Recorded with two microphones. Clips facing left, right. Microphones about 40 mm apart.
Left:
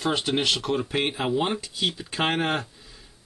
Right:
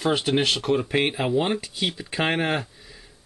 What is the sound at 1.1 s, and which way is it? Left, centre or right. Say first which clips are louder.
Speech: right 2 dB; centre.